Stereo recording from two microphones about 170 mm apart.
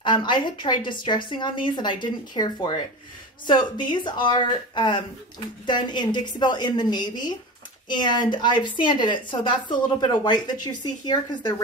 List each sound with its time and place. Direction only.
0.0 s a woman's voice: 25° left (ahead or behind)